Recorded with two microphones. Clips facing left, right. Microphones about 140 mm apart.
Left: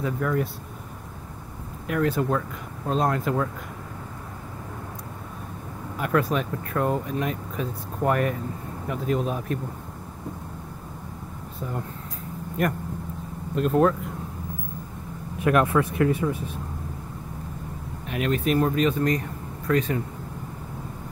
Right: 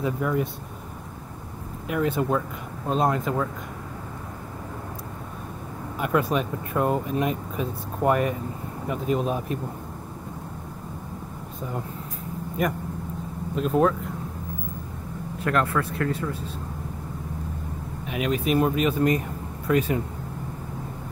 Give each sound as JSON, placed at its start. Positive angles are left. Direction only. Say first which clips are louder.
{"t": 0.0, "sound": "speech", "louder": "even", "side_deg": -5}
{"t": 1.9, "sound": "speech", "louder": "even", "side_deg": 0}
{"t": 5.9, "sound": "speech", "louder": "even", "side_deg": -5}
{"t": 13.6, "sound": "speech", "louder": "left 1 dB", "side_deg": 0}
{"t": 15.3, "sound": "speech", "louder": "left 4 dB", "side_deg": 15}
{"t": 18.0, "sound": "speech", "louder": "left 1 dB", "side_deg": -5}